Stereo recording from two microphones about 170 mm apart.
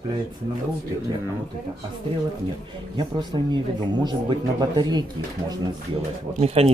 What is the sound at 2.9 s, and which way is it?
Speech, 25° right (ahead or behind).